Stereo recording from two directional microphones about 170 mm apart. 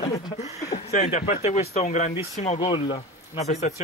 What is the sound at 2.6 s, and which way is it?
Speech, 25° left (ahead or behind).